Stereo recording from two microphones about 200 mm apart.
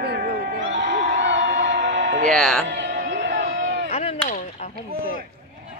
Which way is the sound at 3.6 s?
60° right (ahead or behind).